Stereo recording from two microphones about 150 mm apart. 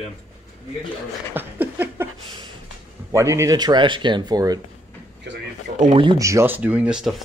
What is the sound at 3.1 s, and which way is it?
Speech, 20° right (ahead or behind).